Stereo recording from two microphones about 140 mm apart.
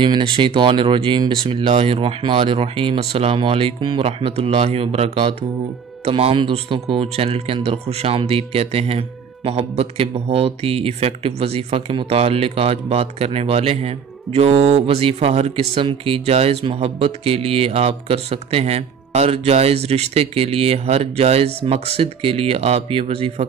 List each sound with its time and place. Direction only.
0.0 s speech: 35° right (ahead or behind)